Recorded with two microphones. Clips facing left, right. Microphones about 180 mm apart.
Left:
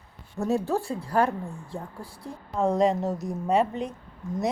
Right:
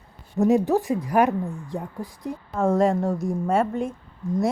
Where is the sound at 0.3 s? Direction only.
15° right (ahead or behind).